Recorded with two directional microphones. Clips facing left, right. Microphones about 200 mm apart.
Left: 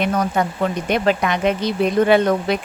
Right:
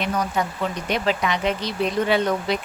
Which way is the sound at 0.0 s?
55° left (ahead or behind).